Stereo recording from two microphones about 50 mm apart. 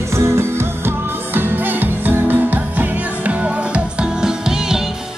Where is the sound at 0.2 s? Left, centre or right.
Right.